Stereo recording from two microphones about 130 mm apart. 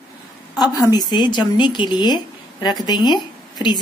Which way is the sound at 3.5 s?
35° left (ahead or behind).